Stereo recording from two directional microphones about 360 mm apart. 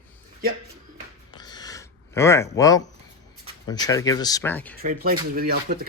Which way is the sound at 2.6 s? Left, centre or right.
Centre.